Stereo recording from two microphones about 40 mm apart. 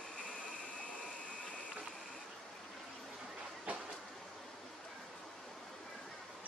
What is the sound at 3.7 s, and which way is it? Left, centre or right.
Train, right.